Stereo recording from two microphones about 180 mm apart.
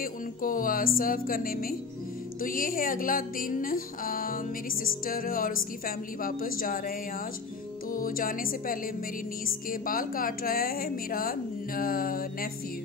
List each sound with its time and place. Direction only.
0.0 s a woman's voice: 50° left (ahead or behind)